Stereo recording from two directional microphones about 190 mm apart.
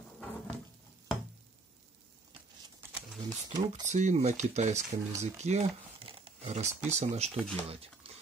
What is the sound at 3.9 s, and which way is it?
Speech, 35° right (ahead or behind).